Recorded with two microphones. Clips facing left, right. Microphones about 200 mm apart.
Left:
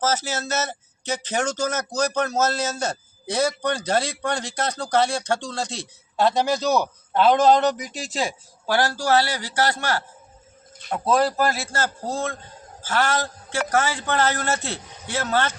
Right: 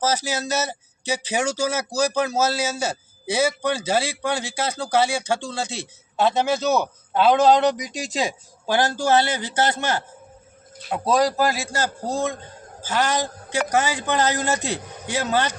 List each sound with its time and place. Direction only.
0.0 s a man's voice: 15° right (ahead or behind)